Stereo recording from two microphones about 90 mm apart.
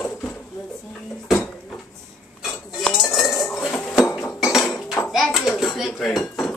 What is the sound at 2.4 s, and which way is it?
Dishes, centre (ahead or behind).